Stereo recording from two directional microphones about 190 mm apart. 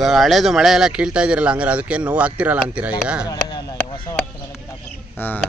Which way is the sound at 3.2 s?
20° left (ahead or behind).